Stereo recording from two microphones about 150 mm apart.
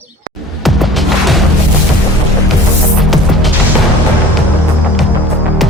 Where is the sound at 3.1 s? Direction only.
Centre (ahead or behind).